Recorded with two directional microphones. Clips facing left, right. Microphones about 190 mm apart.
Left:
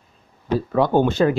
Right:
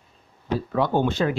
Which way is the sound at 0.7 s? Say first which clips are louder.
Left 5 dB; 45° left (ahead or behind).